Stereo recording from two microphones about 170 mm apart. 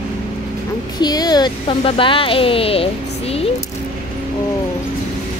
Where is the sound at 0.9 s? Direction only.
25° left (ahead or behind).